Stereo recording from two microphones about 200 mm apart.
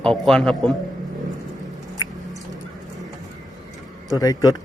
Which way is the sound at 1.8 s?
20° left (ahead or behind).